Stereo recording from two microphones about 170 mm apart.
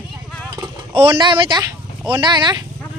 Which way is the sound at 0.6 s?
30° right (ahead or behind).